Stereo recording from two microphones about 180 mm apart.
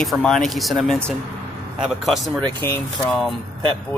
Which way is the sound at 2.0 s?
Centre (ahead or behind).